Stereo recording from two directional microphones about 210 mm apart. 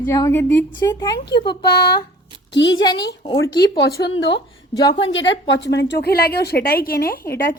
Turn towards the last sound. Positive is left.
turn(degrees=45)  # may be behind; listen again after turning